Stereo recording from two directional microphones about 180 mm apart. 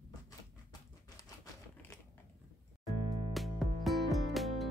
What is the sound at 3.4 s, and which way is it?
Music, centre (ahead or behind).